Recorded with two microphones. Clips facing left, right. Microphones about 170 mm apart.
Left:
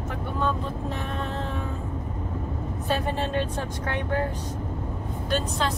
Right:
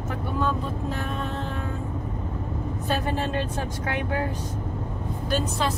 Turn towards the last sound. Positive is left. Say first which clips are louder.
# right 1 dB
turn(degrees=-5)  # may be behind; listen again after turning